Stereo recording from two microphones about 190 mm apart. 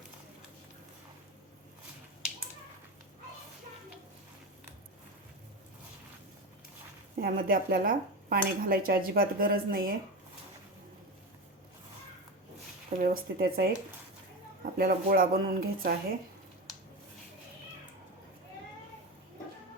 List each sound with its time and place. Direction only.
7.2 s dishes: 50° right (ahead or behind)
13.0 s dishes: 50° right (ahead or behind)